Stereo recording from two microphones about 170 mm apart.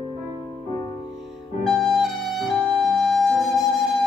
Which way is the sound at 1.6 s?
Centre (ahead or behind).